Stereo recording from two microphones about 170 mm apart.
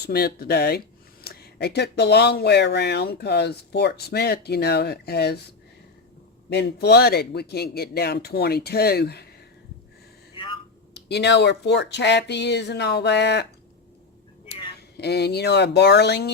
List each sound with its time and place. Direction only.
0.0 s speech: 65° left (ahead or behind)
6.5 s speech: 75° left (ahead or behind)
10.3 s a sound: 30° left (ahead or behind)
10.9 s speech: 85° left
14.8 s speech: 75° left (ahead or behind)